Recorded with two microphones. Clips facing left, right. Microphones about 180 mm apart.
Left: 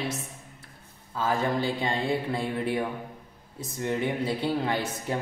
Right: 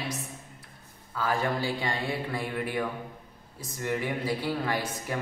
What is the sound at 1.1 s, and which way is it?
A man's voice, 20° left (ahead or behind).